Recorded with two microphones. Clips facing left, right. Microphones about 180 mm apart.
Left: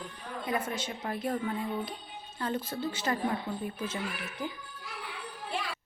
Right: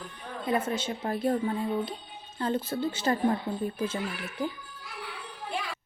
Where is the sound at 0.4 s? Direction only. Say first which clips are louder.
Right 5 dB; 25° right (ahead or behind).